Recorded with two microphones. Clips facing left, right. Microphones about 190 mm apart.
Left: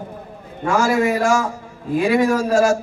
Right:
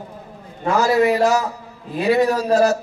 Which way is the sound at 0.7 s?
50° left (ahead or behind).